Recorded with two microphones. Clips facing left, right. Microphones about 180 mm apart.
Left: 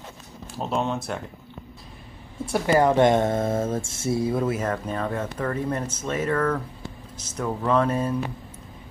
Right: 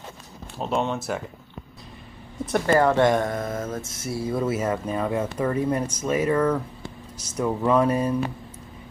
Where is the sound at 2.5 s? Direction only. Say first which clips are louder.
Even; 15° left (ahead or behind).